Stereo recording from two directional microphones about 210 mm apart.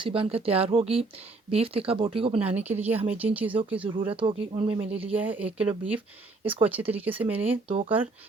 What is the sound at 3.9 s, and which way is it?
Speech, 25° right (ahead or behind).